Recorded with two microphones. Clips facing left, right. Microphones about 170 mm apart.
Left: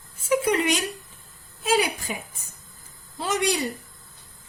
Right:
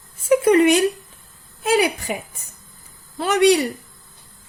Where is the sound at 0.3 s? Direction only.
55° right (ahead or behind).